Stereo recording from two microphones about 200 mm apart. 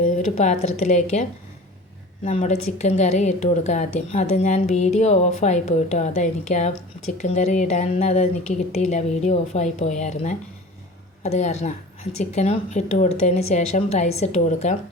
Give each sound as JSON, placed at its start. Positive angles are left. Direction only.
{"t": 0.0, "sound": "a woman's voice", "side_deg": 40}